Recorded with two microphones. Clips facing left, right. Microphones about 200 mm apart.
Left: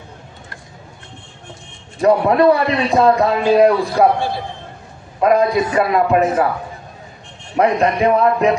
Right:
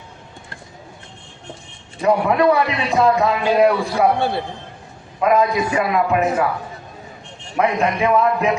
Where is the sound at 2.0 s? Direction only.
40° left (ahead or behind).